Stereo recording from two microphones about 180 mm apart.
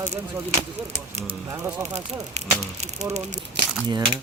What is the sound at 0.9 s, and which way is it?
Speech, 40° right (ahead or behind).